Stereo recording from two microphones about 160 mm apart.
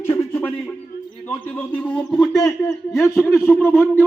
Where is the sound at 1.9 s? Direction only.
5° left (ahead or behind).